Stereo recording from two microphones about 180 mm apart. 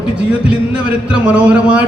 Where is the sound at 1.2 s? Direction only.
5° right (ahead or behind).